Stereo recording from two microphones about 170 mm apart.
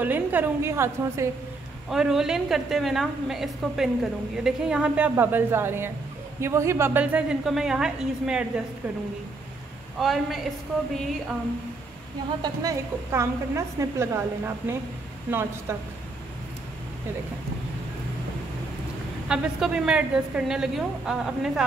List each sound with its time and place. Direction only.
0.0 s a woman's voice: 10° right (ahead or behind)
1.9 s a woman's voice: centre (ahead or behind)
9.9 s a woman's voice: centre (ahead or behind)
12.4 s a woman's voice: 20° right (ahead or behind)
19.2 s a woman's voice: 5° right (ahead or behind)